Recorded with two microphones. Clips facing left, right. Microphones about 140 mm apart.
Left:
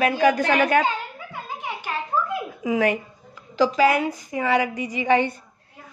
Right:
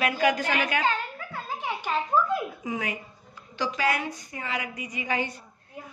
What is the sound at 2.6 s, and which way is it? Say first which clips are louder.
Speech: left 10 dB; 80° left.